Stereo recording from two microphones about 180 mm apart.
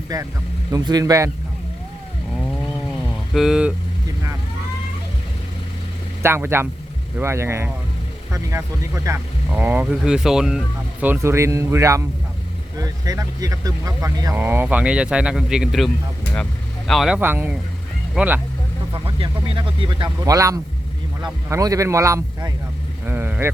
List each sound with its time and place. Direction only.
0.1 s speech: 20° right (ahead or behind)
3.3 s speech: 5° right (ahead or behind)
6.2 s speech: 15° right (ahead or behind)
17.2 s speech: 10° right (ahead or behind)
19.0 s speech: 30° right (ahead or behind)
23.0 s vehicle: 10° right (ahead or behind)